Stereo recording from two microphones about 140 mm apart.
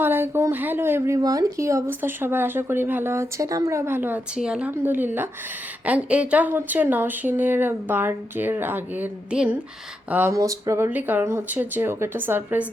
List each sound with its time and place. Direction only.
0.0 s speech: 15° right (ahead or behind)
10.3 s speech: 25° right (ahead or behind)